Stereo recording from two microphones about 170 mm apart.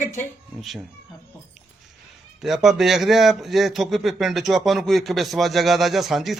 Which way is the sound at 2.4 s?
Centre (ahead or behind).